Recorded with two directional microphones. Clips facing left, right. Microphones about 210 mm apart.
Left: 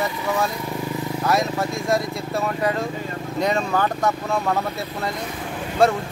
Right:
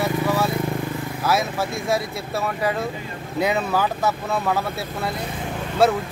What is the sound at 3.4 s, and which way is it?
Speech, 5° right (ahead or behind).